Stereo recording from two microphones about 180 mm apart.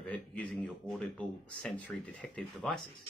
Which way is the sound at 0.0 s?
5° left (ahead or behind).